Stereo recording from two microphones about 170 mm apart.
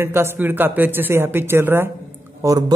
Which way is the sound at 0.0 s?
15° right (ahead or behind).